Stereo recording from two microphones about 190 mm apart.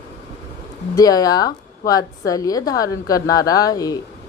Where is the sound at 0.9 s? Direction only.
20° left (ahead or behind).